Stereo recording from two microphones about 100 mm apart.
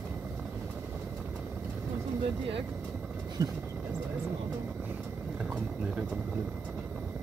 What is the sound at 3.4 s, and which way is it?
Speech, 40° right (ahead or behind).